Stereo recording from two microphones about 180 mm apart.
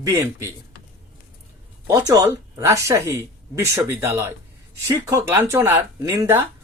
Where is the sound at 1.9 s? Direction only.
15° right (ahead or behind).